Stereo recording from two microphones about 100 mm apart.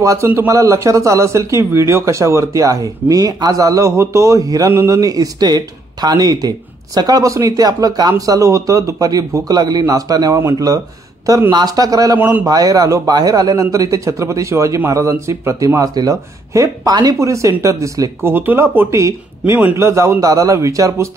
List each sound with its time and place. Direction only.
0.0 s speech: 30° right (ahead or behind)
12.2 s speech: 20° right (ahead or behind)
12.4 s speech: 35° right (ahead or behind)
18.3 s speech: 20° right (ahead or behind)